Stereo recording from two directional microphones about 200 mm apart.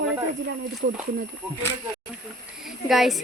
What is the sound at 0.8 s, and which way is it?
Speech, 55° right (ahead or behind).